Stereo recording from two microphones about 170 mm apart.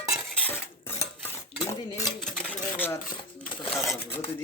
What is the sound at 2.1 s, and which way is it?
Stir, 5° left (ahead or behind).